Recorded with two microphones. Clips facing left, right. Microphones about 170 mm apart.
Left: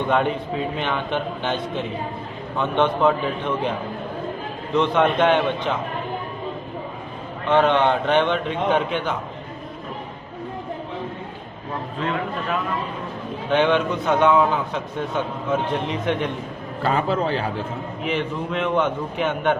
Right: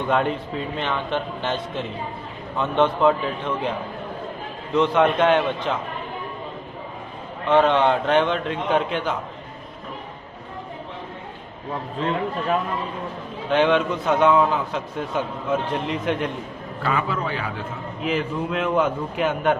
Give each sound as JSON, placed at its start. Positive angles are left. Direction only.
{"t": 0.1, "sound": "a man's voice", "side_deg": 0}
{"t": 4.7, "sound": "a man's voice", "side_deg": -5}
{"t": 7.4, "sound": "a man's voice", "side_deg": -5}
{"t": 12.0, "sound": "a man's voice", "side_deg": -30}
{"t": 13.5, "sound": "a man's voice", "side_deg": 0}
{"t": 16.8, "sound": "a man's voice", "side_deg": 35}
{"t": 18.0, "sound": "a man's voice", "side_deg": -5}